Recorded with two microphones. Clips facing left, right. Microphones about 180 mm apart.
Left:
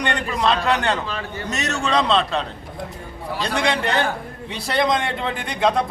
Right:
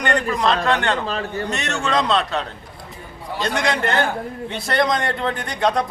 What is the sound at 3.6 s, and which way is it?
A man's voice, centre (ahead or behind).